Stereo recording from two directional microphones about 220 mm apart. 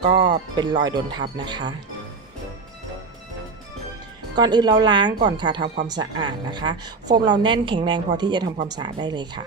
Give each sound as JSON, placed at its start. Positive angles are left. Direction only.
{"t": 0.1, "sound": "a woman's voice", "side_deg": -20}
{"t": 4.4, "sound": "a woman's voice", "side_deg": -20}